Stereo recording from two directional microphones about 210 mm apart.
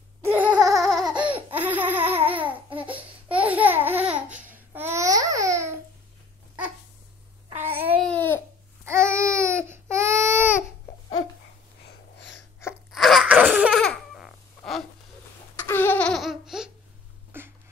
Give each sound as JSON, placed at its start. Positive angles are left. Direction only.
{"t": 0.2, "sound": "babbling", "side_deg": -10}
{"t": 0.8, "sound": "a sound", "side_deg": 0}
{"t": 1.2, "sound": "laughter", "side_deg": -10}
{"t": 2.2, "sound": "babbling", "side_deg": -10}
{"t": 7.6, "sound": "babbling", "side_deg": -10}
{"t": 8.1, "sound": "babbling", "side_deg": 10}
{"t": 8.8, "sound": "babbling", "side_deg": -10}
{"t": 12.2, "sound": "sneeze", "side_deg": 55}
{"t": 12.9, "sound": "baby cry", "side_deg": 0}
{"t": 15.6, "sound": "baby laughter", "side_deg": 10}
{"t": 17.3, "sound": "a sound", "side_deg": -10}